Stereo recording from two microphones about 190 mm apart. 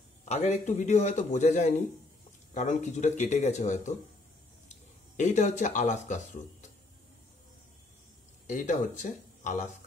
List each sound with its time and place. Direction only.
0.2 s speech: 35° left (ahead or behind)
5.1 s speech: 40° left (ahead or behind)
8.5 s speech: 40° left (ahead or behind)